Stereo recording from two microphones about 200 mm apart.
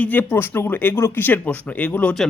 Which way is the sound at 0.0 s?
10° left (ahead or behind).